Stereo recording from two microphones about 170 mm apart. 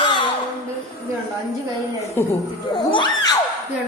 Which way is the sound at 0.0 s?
25° left (ahead or behind).